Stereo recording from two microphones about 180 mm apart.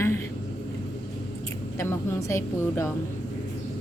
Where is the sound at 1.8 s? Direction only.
15° left (ahead or behind).